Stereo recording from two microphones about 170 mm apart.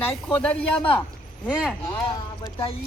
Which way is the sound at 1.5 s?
5° right (ahead or behind).